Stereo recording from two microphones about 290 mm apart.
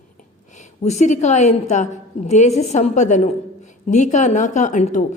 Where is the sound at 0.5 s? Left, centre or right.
Left.